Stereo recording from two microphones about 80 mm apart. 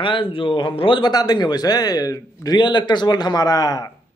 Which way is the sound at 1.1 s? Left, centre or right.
Left.